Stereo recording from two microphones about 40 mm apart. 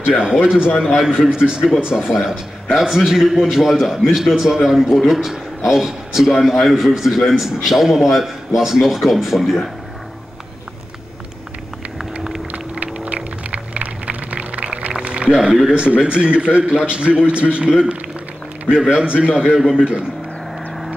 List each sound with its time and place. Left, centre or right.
0.0 s a man's voice: right
12.4 s a sound: right
15.6 s a man's voice: right